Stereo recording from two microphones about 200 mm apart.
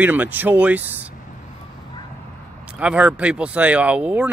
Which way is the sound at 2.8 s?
5° right (ahead or behind).